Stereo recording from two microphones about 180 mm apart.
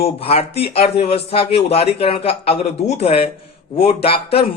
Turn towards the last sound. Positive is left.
turn(degrees=35)  # may be behind; listen again after turning